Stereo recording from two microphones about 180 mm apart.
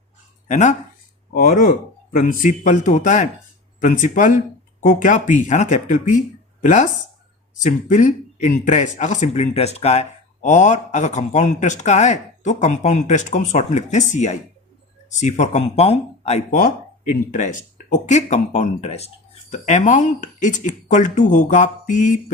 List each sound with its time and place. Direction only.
0.4 s speech: 40° left (ahead or behind)